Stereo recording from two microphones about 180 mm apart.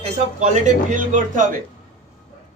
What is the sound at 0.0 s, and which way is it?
Speech, 40° right (ahead or behind).